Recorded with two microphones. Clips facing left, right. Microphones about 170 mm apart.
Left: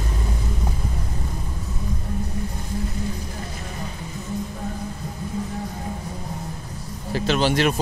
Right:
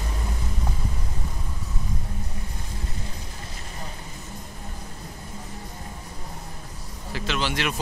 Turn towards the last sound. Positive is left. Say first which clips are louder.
# left 7 dB
turn(degrees=40)  # may be behind; listen again after turning